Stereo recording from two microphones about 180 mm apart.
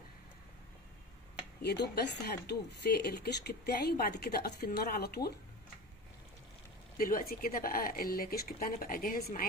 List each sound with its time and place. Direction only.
1.6 s speech: 65° left (ahead or behind)
7.0 s a woman's voice: 50° left (ahead or behind)